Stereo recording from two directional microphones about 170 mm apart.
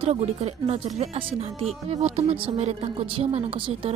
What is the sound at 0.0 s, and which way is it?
Speech, 40° right (ahead or behind).